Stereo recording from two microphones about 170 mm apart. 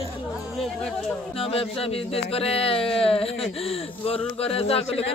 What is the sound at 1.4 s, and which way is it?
Speech, 35° left (ahead or behind).